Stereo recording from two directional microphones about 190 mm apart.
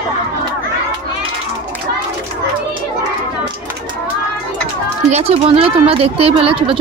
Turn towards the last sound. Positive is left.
turn(degrees=-30)  # may be behind; listen again after turning